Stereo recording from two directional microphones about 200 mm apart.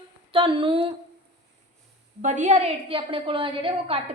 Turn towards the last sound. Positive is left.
turn(degrees=-25)  # may be behind; listen again after turning